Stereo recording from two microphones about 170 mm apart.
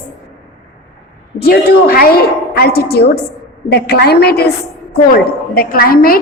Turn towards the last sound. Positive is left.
turn(degrees=60)  # may be behind; listen again after turning